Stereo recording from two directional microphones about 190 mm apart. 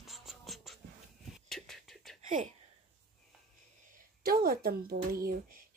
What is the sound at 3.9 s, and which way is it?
Speech, 50° right (ahead or behind).